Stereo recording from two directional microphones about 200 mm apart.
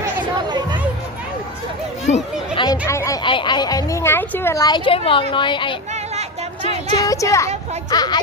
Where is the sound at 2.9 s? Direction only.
15° left (ahead or behind).